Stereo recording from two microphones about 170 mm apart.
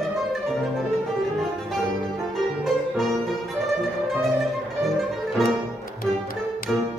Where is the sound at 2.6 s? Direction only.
Centre (ahead or behind).